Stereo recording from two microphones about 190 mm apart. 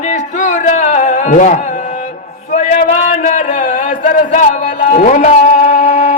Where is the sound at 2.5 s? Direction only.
40° left (ahead or behind).